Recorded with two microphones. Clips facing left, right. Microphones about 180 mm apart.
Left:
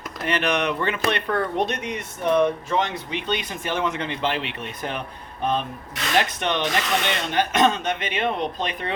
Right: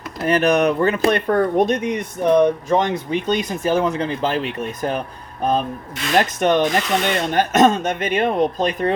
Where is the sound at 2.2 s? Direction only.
15° right (ahead or behind).